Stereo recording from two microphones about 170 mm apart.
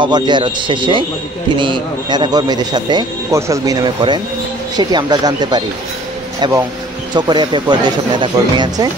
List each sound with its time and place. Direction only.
0.0 s a man's voice: 25° right (ahead or behind)